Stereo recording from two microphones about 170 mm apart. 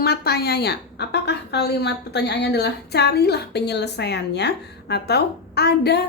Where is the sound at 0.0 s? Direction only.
70° left (ahead or behind).